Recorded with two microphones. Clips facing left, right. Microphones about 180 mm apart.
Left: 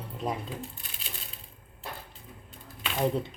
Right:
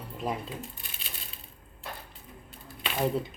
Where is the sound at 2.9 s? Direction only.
5° right (ahead or behind).